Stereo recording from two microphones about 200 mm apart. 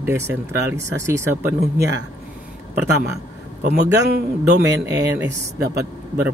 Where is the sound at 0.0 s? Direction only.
10° right (ahead or behind).